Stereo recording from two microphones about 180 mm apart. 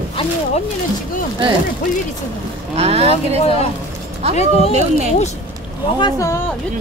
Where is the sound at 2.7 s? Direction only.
35° right (ahead or behind).